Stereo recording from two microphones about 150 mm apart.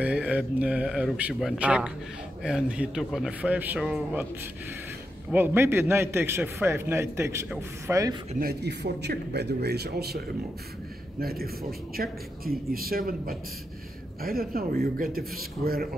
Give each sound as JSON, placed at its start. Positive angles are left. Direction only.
{"t": 0.0, "sound": "a man's voice", "side_deg": -10}
{"t": 5.3, "sound": "a man's voice", "side_deg": -15}
{"t": 8.4, "sound": "a man's voice", "side_deg": -90}